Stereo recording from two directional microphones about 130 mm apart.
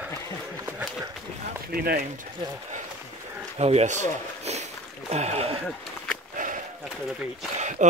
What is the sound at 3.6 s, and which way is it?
Speech, 55° right (ahead or behind).